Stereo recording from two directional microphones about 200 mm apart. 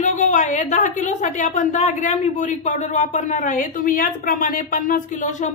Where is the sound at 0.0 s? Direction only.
40° left (ahead or behind).